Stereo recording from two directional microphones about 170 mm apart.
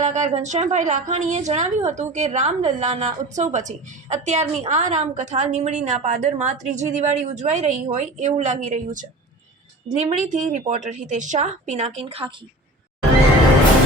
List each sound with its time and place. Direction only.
0.0 s a woman's voice: 40° right (ahead or behind)